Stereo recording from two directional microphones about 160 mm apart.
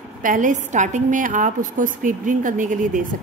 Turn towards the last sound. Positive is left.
turn(degrees=-55)  # may be behind; listen again after turning